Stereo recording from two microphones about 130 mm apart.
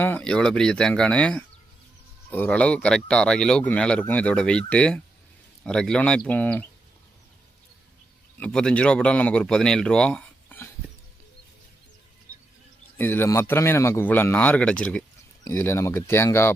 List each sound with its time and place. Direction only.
0.0 s speech: 10° left (ahead or behind)
8.4 s speech: 5° left (ahead or behind)
13.0 s speech: 15° left (ahead or behind)
15.4 s speech: 20° left (ahead or behind)